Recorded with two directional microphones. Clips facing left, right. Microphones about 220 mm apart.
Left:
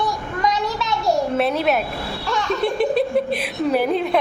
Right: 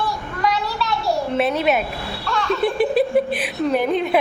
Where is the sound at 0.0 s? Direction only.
20° left (ahead or behind).